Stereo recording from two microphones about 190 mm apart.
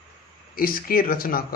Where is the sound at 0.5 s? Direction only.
50° left (ahead or behind).